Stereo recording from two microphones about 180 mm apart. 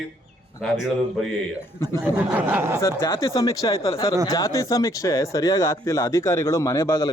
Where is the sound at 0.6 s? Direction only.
Centre (ahead or behind).